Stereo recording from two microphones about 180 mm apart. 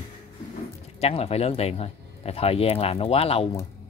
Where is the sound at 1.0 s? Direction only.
35° left (ahead or behind).